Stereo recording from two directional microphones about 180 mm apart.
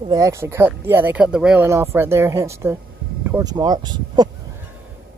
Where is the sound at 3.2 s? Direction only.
10° right (ahead or behind).